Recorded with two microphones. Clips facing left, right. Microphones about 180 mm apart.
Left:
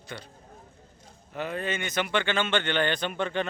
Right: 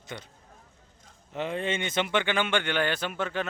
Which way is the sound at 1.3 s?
25° right (ahead or behind).